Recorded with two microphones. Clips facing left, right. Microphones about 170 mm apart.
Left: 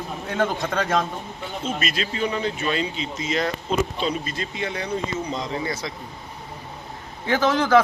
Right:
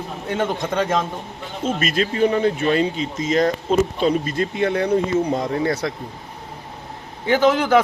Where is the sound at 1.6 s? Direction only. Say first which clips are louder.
Right 7 dB; 50° right (ahead or behind).